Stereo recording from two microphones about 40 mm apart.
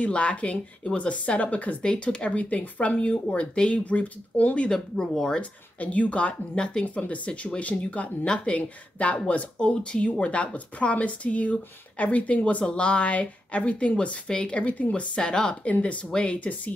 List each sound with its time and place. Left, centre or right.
0.0 s speech: left
1.8 s speech: left
2.3 s speech: left
4.6 s speech: centre
5.4 s speech: left
6.9 s speech: left
14.6 s speech: left
15.0 s speech: left
15.6 s speech: left